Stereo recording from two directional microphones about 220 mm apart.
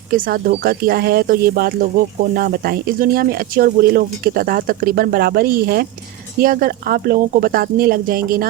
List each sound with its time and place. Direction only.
0.1 s speech: 40° right (ahead or behind)